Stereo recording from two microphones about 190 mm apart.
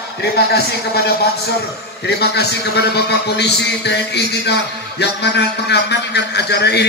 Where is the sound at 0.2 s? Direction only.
60° left (ahead or behind).